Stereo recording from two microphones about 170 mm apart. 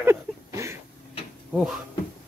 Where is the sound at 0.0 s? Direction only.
15° right (ahead or behind).